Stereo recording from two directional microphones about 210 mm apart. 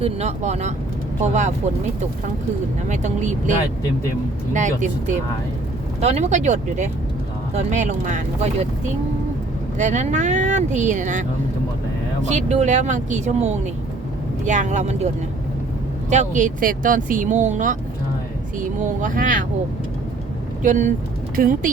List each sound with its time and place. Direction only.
0.0 s speech: 30° right (ahead or behind)
2.9 s speech: 35° right (ahead or behind)
4.5 s speech: 35° right (ahead or behind)
9.7 s speech: 35° right (ahead or behind)
12.3 s speech: 35° right (ahead or behind)
18.8 s speech: 35° right (ahead or behind)
20.6 s speech: 40° right (ahead or behind)